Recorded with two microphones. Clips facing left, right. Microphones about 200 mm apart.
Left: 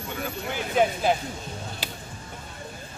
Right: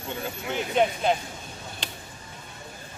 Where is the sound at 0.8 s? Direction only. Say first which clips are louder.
Left 1 dB; 5° left (ahead or behind).